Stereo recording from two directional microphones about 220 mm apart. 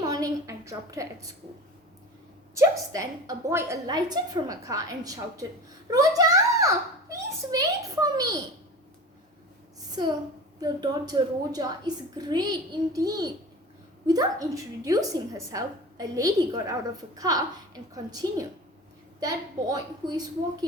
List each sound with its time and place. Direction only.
0.0 s a sound: 15° right (ahead or behind)
2.6 s a woman's voice: 15° right (ahead or behind)
9.9 s a woman's voice: 20° right (ahead or behind)